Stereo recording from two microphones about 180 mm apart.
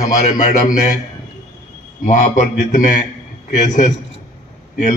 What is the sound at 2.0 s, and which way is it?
A man's voice, 40° left (ahead or behind).